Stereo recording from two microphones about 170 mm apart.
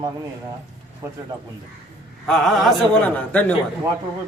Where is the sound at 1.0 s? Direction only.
15° right (ahead or behind).